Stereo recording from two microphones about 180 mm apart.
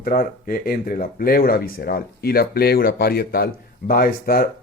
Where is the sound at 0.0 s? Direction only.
50° left (ahead or behind).